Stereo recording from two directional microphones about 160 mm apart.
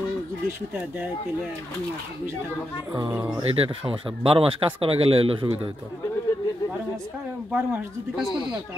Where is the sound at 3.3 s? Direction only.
35° right (ahead or behind).